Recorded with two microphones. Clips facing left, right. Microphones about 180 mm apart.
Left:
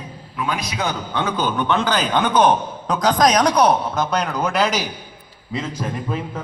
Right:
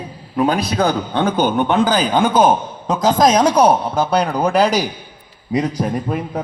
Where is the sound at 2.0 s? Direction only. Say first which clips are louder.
Right 3 dB; 10° right (ahead or behind).